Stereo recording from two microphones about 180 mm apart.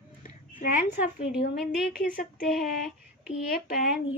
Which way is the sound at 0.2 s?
50° left (ahead or behind).